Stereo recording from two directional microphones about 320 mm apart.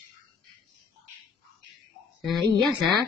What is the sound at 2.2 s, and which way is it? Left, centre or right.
Speech, centre.